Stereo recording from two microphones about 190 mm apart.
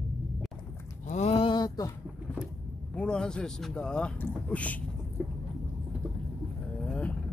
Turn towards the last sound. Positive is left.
turn(degrees=5)  # may be behind; listen again after turning